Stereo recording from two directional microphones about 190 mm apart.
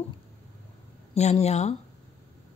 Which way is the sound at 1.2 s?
35° left (ahead or behind).